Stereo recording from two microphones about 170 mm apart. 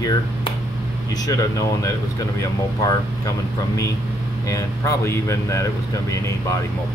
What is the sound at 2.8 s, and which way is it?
Speech, 20° left (ahead or behind).